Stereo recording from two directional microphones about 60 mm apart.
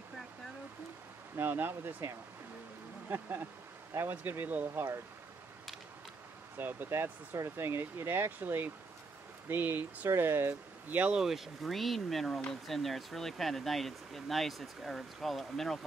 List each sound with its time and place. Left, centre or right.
1.3 s speech: right
3.1 s speech: right
4.7 s speech: right
6.5 s speech: right
10.9 s speech: right
11.1 s speech: centre